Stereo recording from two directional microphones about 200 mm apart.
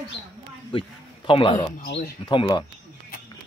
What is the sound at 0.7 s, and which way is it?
A man's voice, 25° left (ahead or behind).